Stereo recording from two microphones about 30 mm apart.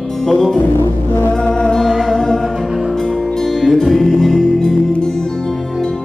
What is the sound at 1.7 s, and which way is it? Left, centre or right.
Music, centre.